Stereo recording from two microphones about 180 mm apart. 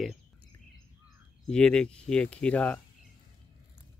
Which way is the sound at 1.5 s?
5° left (ahead or behind).